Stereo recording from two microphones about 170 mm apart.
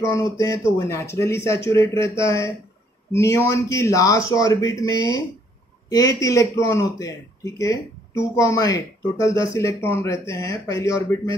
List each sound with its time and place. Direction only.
0.0 s a man's voice: 20° left (ahead or behind)